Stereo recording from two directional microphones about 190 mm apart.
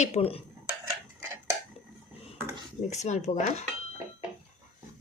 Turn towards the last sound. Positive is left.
turn(degrees=40)  # may be behind; listen again after turning